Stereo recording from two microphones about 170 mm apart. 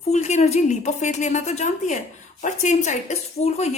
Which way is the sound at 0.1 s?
40° left (ahead or behind).